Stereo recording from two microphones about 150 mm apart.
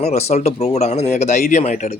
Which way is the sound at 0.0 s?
45° left (ahead or behind).